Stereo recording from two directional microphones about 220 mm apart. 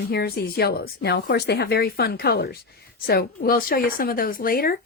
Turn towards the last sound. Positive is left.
turn(degrees=40)  # may be behind; listen again after turning